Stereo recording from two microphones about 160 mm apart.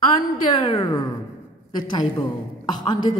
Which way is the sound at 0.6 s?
30° left (ahead or behind).